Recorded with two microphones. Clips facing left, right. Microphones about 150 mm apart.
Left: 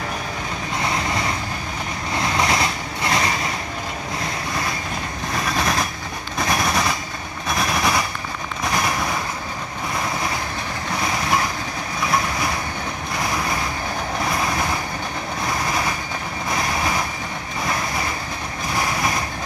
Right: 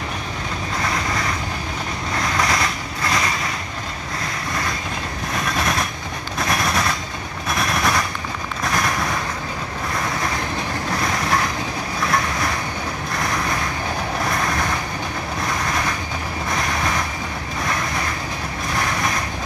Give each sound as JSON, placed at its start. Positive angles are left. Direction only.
{"t": 0.8, "sound": "boat", "side_deg": 25}
{"t": 2.1, "sound": "vehicle", "side_deg": 25}
{"t": 5.4, "sound": "vehicle", "side_deg": 0}
{"t": 6.3, "sound": "gunshot", "side_deg": 0}
{"t": 7.4, "sound": "vehicle", "side_deg": 0}
{"t": 8.6, "sound": "a sound", "side_deg": 5}
{"t": 12.0, "sound": "vehicle", "side_deg": 5}
{"t": 16.5, "sound": "vehicle", "side_deg": 5}